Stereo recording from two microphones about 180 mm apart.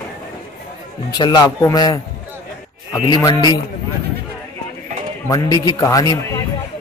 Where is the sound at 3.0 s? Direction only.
25° left (ahead or behind).